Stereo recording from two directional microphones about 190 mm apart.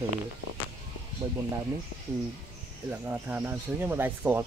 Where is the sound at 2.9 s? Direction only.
10° right (ahead or behind).